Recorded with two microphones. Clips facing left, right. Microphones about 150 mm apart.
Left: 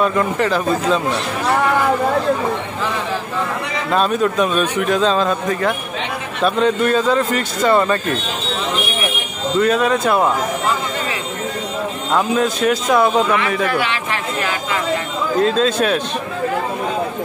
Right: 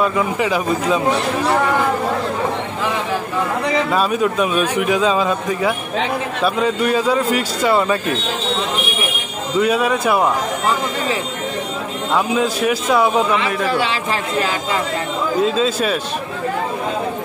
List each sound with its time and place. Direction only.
0.0 s a man's voice: 5° right (ahead or behind)
3.9 s a man's voice: 5° right (ahead or behind)
9.6 s a man's voice: 10° right (ahead or behind)
12.1 s a man's voice: 5° right (ahead or behind)
13.7 s speech: 30° right (ahead or behind)
15.4 s a man's voice: 5° right (ahead or behind)